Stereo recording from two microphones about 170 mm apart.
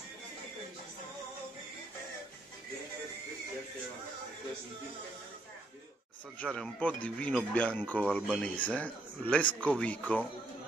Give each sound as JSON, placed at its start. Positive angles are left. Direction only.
{"t": 6.4, "sound": "speech", "side_deg": 5}